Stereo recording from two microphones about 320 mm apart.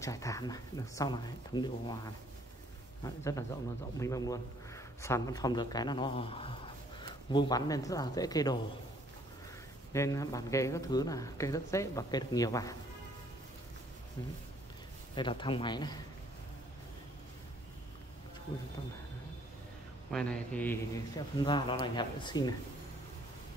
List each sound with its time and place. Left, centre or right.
0.0 s a man's voice: centre
9.9 s speech: centre
15.1 s speech: centre
20.1 s speech: centre